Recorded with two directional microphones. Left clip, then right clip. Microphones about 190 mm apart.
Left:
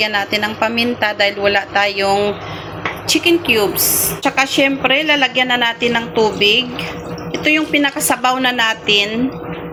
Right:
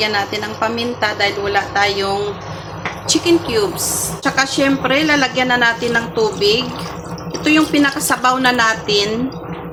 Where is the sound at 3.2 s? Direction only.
15° left (ahead or behind).